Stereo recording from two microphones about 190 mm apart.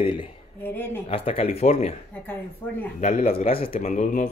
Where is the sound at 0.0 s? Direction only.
25° left (ahead or behind).